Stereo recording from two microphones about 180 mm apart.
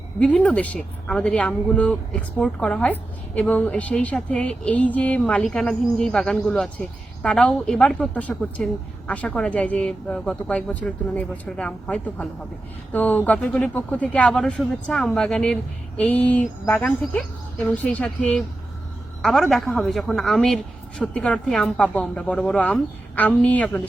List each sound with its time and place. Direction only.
0.2 s speech: 5° left (ahead or behind)